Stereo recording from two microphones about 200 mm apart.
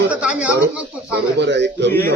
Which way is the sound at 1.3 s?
60° right (ahead or behind).